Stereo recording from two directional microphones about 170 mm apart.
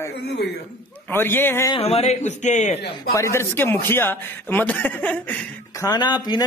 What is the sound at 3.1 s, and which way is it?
A man's voice, 15° left (ahead or behind).